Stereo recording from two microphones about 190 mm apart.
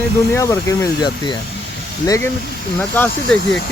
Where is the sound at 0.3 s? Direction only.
15° left (ahead or behind).